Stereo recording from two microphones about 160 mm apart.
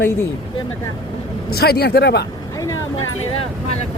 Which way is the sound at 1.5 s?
75° left (ahead or behind).